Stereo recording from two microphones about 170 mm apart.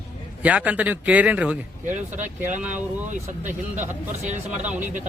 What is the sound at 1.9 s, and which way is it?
Speech, 45° right (ahead or behind).